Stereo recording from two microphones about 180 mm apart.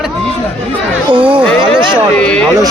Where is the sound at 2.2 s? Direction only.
5° left (ahead or behind).